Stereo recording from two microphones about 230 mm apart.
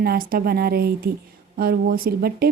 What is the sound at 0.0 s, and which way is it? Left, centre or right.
Speech, right.